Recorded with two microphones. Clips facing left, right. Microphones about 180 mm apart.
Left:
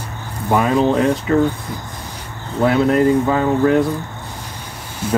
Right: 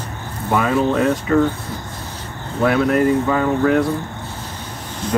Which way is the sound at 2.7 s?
25° left (ahead or behind).